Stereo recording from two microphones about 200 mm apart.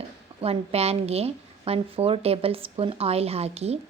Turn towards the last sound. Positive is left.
turn(degrees=-30)  # may be behind; listen again after turning